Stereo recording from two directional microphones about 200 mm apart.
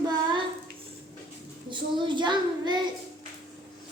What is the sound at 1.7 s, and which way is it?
Child singing, 25° right (ahead or behind).